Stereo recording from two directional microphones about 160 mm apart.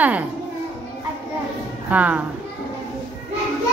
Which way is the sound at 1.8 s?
10° right (ahead or behind).